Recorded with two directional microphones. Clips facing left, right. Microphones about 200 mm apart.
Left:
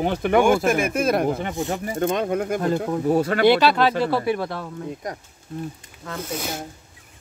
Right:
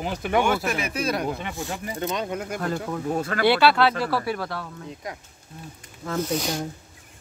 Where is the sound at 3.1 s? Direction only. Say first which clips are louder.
Left 7 dB; 35° left (ahead or behind).